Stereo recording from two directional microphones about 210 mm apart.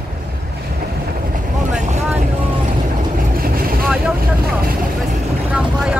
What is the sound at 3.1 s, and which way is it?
Vehicle, 45° right (ahead or behind).